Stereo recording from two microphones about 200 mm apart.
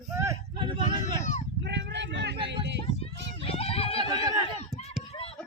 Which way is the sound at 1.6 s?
60° right (ahead or behind).